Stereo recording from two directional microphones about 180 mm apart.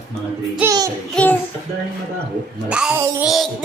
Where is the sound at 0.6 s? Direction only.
20° right (ahead or behind).